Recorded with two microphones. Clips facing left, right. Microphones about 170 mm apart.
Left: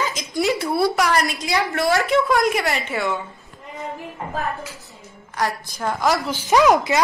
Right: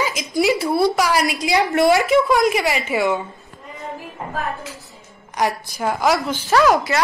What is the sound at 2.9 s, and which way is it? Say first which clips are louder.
Speech: right 5 dB; 20° right (ahead or behind).